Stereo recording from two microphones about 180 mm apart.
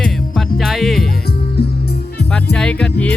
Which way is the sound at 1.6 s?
60° left (ahead or behind).